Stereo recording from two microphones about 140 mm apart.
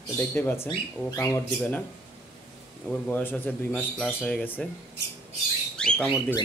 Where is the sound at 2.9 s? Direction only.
15° left (ahead or behind).